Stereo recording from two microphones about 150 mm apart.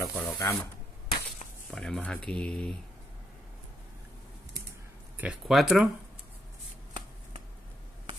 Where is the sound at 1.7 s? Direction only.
5° left (ahead or behind).